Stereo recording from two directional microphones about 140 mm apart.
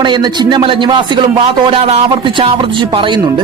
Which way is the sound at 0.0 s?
35° right (ahead or behind).